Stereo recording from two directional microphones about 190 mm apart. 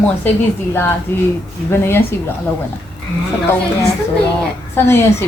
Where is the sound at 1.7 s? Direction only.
10° left (ahead or behind).